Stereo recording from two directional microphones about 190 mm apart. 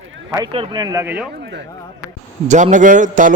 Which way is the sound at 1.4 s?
60° right (ahead or behind).